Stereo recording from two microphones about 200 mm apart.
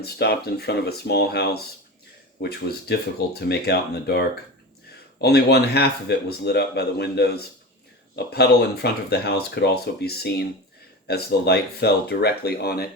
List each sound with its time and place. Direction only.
0.0 s speech: 50° left (ahead or behind)
5.2 s speech: 55° left (ahead or behind)